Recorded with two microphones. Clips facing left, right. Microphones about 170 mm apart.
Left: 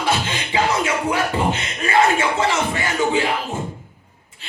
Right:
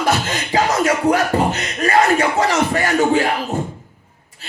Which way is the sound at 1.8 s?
40° right (ahead or behind).